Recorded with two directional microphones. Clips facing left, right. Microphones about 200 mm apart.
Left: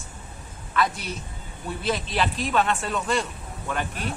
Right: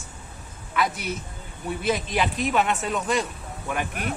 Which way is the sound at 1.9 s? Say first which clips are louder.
Right 1 dB; 10° right (ahead or behind).